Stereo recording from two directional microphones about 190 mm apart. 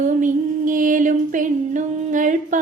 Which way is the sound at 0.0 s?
40° right (ahead or behind).